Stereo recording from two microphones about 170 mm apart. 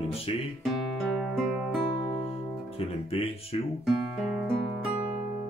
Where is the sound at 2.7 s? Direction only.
35° left (ahead or behind).